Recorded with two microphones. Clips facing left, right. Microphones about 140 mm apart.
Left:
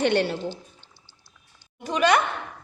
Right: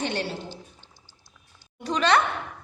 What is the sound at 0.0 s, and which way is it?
Speech, 60° left (ahead or behind).